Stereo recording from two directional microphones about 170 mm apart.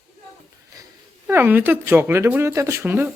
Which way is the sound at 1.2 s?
10° right (ahead or behind).